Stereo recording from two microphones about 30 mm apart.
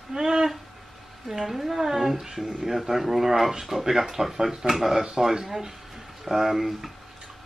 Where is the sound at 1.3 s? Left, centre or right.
Centre.